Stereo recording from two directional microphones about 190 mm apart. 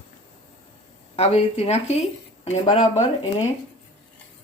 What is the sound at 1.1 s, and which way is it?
Speech, 35° left (ahead or behind).